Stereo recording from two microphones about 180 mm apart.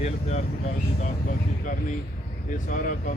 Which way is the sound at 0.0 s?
35° left (ahead or behind).